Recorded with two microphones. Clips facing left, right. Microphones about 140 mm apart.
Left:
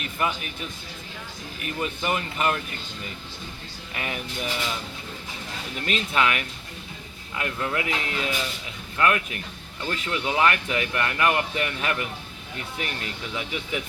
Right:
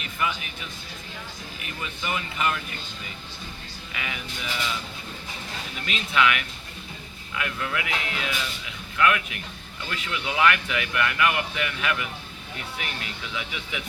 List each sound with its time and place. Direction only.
1.8 s speech: 40° left (ahead or behind)
3.9 s speech: 40° left (ahead or behind)
5.8 s speech: 40° left (ahead or behind)
13.3 s speech: 35° left (ahead or behind)